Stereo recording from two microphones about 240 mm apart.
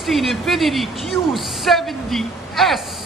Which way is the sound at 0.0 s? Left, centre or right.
Centre.